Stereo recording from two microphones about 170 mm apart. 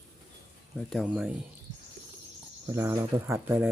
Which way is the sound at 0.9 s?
5° right (ahead or behind).